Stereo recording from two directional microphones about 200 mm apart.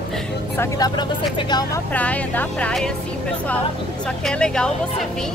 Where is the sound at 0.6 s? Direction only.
20° left (ahead or behind).